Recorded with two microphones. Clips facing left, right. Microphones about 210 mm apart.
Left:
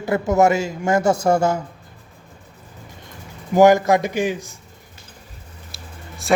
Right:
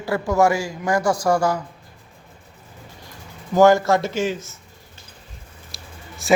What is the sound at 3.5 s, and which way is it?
Speech, 15° left (ahead or behind).